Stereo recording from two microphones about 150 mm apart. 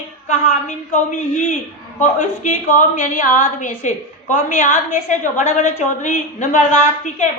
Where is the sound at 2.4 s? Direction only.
55° left (ahead or behind).